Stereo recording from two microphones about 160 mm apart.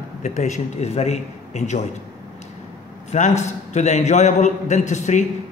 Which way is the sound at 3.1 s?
45° left (ahead or behind).